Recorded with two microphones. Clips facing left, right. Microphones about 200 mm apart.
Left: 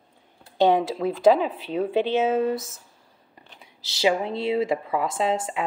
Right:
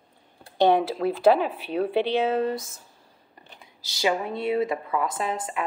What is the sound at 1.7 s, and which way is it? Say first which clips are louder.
Speech: left 1 dB; 20° left (ahead or behind).